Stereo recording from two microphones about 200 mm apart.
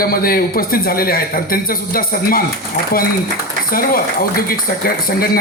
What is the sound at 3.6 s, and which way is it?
A man's voice, 45° left (ahead or behind).